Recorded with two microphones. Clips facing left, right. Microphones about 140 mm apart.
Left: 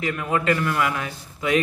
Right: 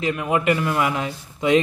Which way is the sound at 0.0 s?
20° right (ahead or behind).